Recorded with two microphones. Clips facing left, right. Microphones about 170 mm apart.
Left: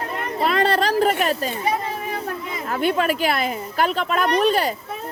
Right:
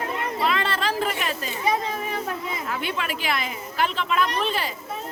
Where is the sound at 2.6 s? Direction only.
45° left (ahead or behind).